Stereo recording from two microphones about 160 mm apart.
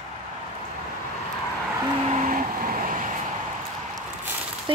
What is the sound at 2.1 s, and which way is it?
Vehicle, 55° right (ahead or behind).